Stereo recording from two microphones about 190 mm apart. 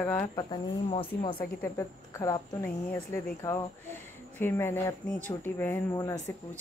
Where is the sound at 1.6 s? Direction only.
15° left (ahead or behind).